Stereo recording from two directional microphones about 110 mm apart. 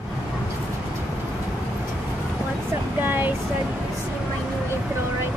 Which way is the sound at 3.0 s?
15° right (ahead or behind).